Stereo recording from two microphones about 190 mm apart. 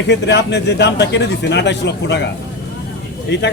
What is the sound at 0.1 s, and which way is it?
Speech, 65° left (ahead or behind).